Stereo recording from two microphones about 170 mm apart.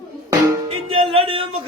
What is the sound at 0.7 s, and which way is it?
Music, 35° right (ahead or behind).